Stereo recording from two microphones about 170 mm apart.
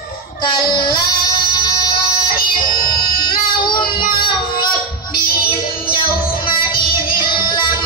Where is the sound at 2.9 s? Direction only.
25° left (ahead or behind).